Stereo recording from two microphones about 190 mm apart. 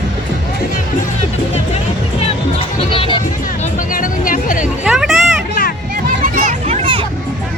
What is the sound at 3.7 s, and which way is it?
Music, 45° left (ahead or behind).